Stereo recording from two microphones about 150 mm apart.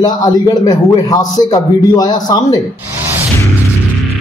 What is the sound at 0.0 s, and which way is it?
A man's voice, 25° left (ahead or behind).